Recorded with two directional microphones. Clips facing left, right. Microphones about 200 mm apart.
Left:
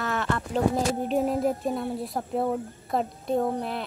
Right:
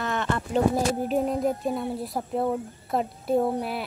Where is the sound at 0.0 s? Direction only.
5° left (ahead or behind).